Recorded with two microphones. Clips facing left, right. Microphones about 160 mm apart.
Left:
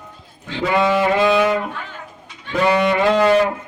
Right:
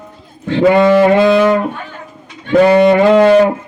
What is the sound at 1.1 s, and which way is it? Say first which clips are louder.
Music: right 6 dB; 60° right (ahead or behind).